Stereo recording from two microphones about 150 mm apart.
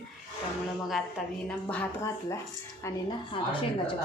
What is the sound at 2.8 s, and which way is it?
A woman's voice, 30° left (ahead or behind).